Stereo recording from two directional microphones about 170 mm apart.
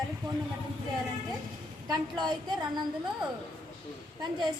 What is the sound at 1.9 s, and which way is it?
Speech, 25° right (ahead or behind).